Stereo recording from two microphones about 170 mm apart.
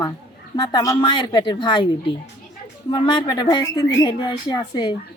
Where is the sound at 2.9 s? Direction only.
25° left (ahead or behind).